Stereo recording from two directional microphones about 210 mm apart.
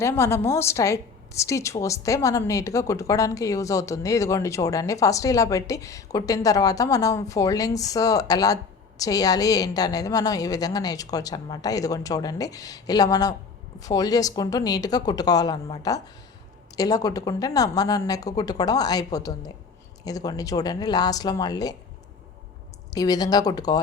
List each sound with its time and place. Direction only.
0.0 s a woman's voice: 10° left (ahead or behind)
22.9 s a woman's voice: 15° left (ahead or behind)